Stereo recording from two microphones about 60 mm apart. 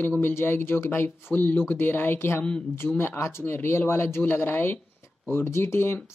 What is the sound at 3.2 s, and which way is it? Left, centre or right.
Speech, left.